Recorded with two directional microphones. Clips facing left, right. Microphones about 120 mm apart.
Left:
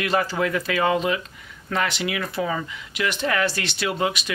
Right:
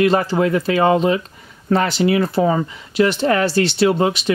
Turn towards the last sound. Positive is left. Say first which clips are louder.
# right 9 dB
turn(degrees=-30)  # may be behind; listen again after turning